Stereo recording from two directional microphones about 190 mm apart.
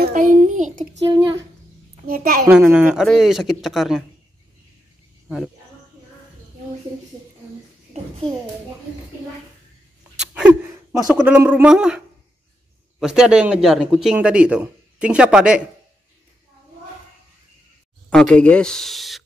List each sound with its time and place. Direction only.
0.0 s a child's voice: 45° right (ahead or behind)
2.0 s a child's voice: 50° right (ahead or behind)
2.6 s a man's voice: 5° right (ahead or behind)
10.1 s gasp: 5° right (ahead or behind)
11.2 s speech: 5° right (ahead or behind)
13.0 s a man's voice: 5° right (ahead or behind)
18.1 s a man's voice: 5° left (ahead or behind)